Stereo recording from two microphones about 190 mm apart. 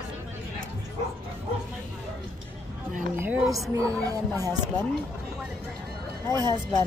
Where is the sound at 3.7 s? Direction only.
15° right (ahead or behind).